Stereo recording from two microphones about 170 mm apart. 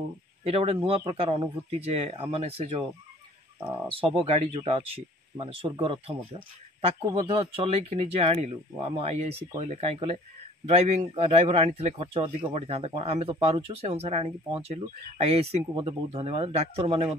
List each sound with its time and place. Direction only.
0.4 s speech: 35° right (ahead or behind)
3.9 s speech: 35° right (ahead or behind)
7.2 s speech: 35° right (ahead or behind)